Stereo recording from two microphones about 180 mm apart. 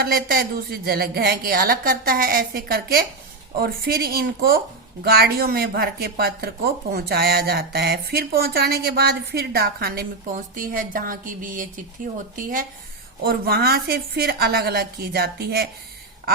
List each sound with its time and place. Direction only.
0.0 s speech: 55° right (ahead or behind)
13.2 s speech: 60° right (ahead or behind)